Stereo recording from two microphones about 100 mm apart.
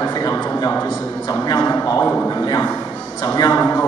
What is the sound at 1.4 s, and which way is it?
Speech, 40° left (ahead or behind).